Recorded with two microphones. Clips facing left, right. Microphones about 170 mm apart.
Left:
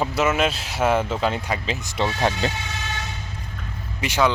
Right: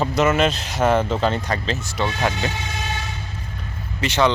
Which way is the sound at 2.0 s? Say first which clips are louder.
Left 1 dB; 30° left (ahead or behind).